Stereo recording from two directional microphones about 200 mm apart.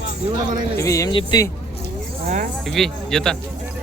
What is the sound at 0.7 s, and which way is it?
Speech, 15° left (ahead or behind).